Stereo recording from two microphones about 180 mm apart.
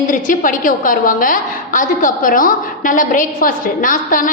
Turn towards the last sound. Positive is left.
turn(degrees=45)  # may be behind; listen again after turning